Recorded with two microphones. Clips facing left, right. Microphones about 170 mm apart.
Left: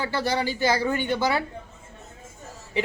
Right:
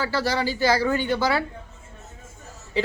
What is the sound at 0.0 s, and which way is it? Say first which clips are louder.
Speech: right 1 dB; 20° left (ahead or behind).